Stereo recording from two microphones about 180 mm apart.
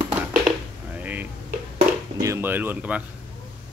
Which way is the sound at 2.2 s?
15° right (ahead or behind).